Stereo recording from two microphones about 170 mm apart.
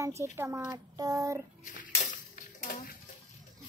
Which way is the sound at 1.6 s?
50° left (ahead or behind).